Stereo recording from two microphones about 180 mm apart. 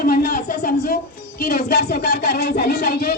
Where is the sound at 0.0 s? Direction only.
45° left (ahead or behind).